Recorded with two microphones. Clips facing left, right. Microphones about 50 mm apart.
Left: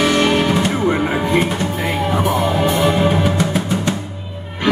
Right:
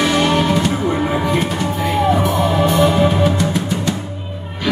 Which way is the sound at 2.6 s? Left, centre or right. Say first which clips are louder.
Right 2 dB; centre.